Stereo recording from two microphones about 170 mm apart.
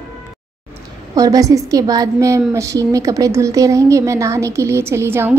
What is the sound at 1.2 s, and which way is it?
A woman's voice, 20° right (ahead or behind).